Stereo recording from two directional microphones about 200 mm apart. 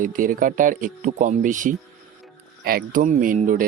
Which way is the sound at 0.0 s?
40° right (ahead or behind).